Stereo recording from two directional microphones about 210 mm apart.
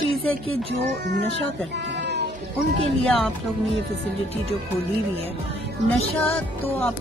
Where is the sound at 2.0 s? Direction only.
55° right (ahead or behind).